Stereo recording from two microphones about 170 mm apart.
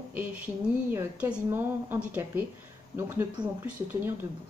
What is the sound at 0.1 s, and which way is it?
A woman's voice, 10° right (ahead or behind).